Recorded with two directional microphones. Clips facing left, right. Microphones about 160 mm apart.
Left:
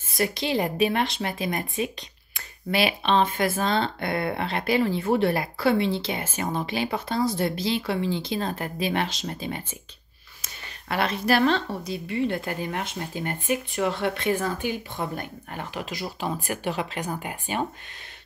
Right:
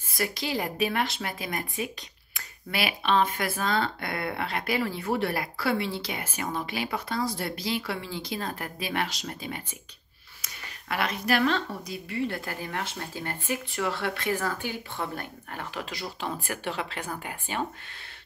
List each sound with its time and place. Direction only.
0.1 s speech: 20° left (ahead or behind)